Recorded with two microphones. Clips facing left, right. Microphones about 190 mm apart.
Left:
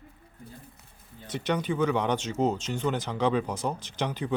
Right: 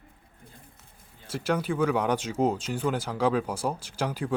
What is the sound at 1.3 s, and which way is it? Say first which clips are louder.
Speech: right 1 dB; 5° right (ahead or behind).